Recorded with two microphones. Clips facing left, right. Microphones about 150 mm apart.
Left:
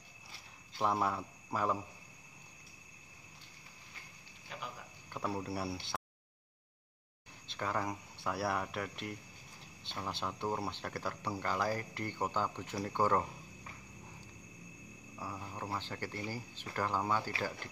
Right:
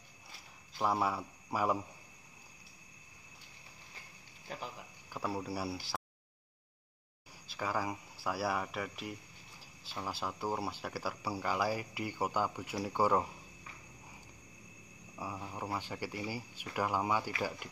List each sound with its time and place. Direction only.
0.3 s a sound: centre (ahead or behind)
4.5 s speech: 45° right (ahead or behind)
5.1 s speech: centre (ahead or behind)
7.4 s speech: 5° right (ahead or behind)
15.1 s speech: 10° right (ahead or behind)